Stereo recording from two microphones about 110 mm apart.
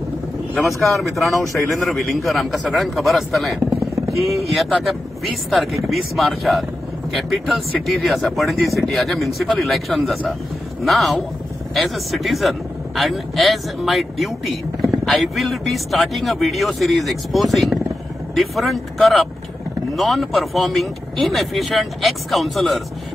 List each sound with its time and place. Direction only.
0.6 s a man's voice: centre (ahead or behind)